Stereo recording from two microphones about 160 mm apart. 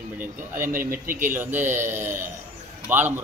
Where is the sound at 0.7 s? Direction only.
60° right (ahead or behind).